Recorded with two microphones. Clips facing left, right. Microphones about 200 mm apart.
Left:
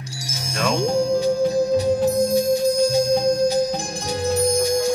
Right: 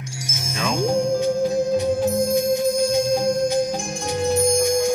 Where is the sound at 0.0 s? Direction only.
35° left (ahead or behind).